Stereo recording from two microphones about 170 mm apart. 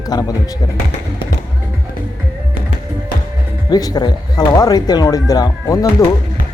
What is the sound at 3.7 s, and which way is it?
Speech, 25° left (ahead or behind).